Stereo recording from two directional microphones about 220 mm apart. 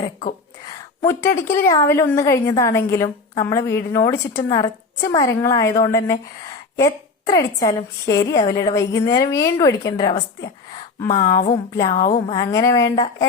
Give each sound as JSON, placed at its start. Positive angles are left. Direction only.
{"t": 0.0, "sound": "speech", "side_deg": 35}
{"t": 1.0, "sound": "a woman's voice", "side_deg": 10}
{"t": 10.0, "sound": "a sound", "side_deg": 20}
{"t": 12.3, "sound": "a woman's voice", "side_deg": 20}